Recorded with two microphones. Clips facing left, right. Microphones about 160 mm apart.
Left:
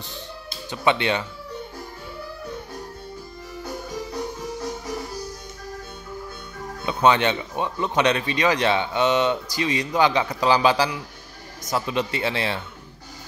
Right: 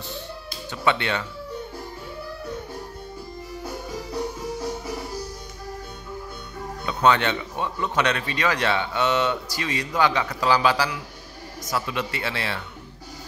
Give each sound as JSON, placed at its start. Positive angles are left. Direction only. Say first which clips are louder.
{"t": 0.5, "sound": "speech", "louder": "left 2 dB", "side_deg": 20}
{"t": 6.9, "sound": "a man's voice", "louder": "left 2 dB", "side_deg": 20}